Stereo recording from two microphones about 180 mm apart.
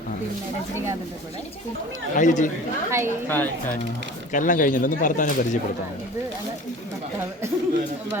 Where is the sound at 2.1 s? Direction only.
45° left (ahead or behind).